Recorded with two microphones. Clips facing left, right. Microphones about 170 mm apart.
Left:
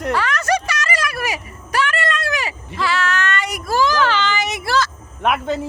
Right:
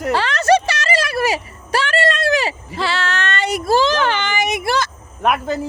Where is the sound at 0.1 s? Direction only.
30° right (ahead or behind).